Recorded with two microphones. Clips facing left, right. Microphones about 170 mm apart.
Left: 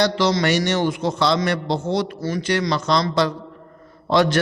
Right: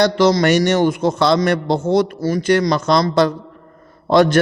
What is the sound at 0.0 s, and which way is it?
A man's voice, 45° right (ahead or behind).